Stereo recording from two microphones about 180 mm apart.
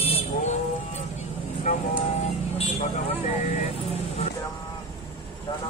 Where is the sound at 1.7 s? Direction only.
45° left (ahead or behind).